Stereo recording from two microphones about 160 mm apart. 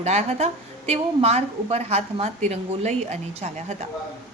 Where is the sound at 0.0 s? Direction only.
40° right (ahead or behind).